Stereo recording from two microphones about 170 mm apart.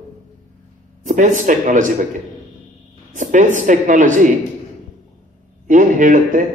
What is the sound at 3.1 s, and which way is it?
A man's voice, 45° right (ahead or behind).